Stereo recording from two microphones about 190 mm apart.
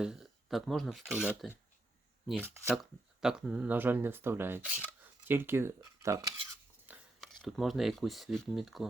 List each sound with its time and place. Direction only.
0.0 s speech: 5° right (ahead or behind)
2.7 s speech: 5° right (ahead or behind)
7.2 s speech: centre (ahead or behind)